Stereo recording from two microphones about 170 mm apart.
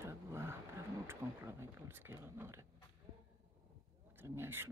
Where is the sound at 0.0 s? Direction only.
15° right (ahead or behind).